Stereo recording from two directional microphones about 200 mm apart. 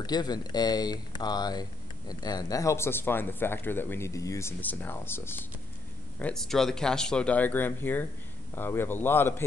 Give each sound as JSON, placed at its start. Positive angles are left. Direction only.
{"t": 0.0, "sound": "speech", "side_deg": 20}